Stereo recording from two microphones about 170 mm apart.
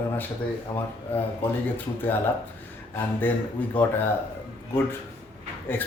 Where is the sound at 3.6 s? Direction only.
10° left (ahead or behind).